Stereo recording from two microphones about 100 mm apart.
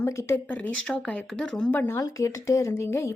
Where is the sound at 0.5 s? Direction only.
10° left (ahead or behind).